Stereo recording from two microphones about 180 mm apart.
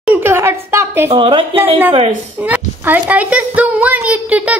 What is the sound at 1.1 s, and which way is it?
Speech, 30° right (ahead or behind).